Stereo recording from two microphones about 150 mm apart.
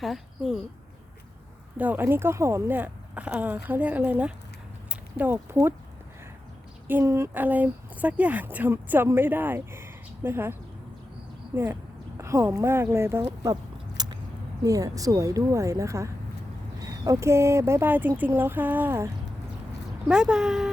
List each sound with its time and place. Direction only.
0.0 s speech: centre (ahead or behind)
1.8 s speech: 15° right (ahead or behind)
6.8 s speech: 15° right (ahead or behind)
11.5 s a sound: 15° right (ahead or behind)
14.6 s a woman's voice: 25° right (ahead or behind)
20.1 s speech: 5° right (ahead or behind)